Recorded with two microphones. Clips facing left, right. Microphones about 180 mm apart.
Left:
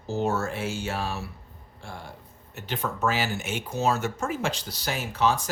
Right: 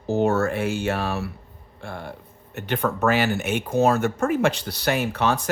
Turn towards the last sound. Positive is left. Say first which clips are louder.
# right 2 dB
turn(degrees=-65)  # may be behind; listen again after turning